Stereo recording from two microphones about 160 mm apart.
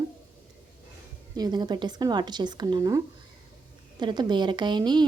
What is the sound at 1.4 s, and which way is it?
Speech, 25° right (ahead or behind).